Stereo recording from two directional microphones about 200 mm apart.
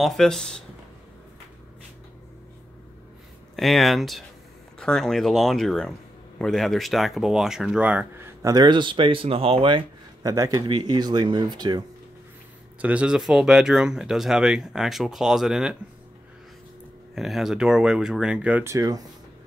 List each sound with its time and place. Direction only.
0.0 s speech: centre (ahead or behind)
3.5 s speech: centre (ahead or behind); by 11.8 s 20° right (ahead or behind)
12.8 s speech: 5° right (ahead or behind)
17.1 s speech: centre (ahead or behind); by 19.0 s 20° right (ahead or behind)